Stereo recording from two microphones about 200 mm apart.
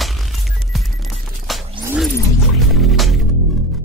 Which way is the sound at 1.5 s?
Centre (ahead or behind).